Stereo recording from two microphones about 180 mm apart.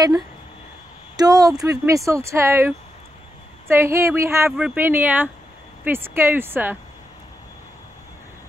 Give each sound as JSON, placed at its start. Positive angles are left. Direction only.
{"t": 1.1, "sound": "speech", "side_deg": -20}